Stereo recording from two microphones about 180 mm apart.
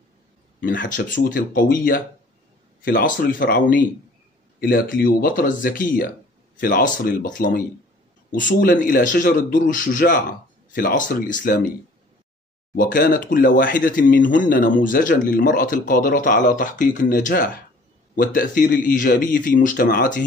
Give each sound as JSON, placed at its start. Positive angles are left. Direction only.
{"t": 0.6, "sound": "speech", "side_deg": 50}
{"t": 12.7, "sound": "speech", "side_deg": 50}